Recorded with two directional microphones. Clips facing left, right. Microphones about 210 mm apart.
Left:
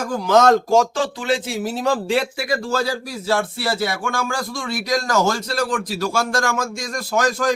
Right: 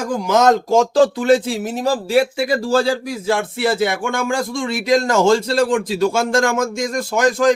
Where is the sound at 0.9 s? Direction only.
45° right (ahead or behind).